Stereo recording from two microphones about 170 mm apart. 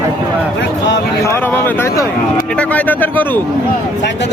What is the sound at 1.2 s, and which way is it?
Speech, 15° left (ahead or behind).